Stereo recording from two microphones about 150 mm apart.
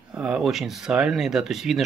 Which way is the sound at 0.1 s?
5° right (ahead or behind).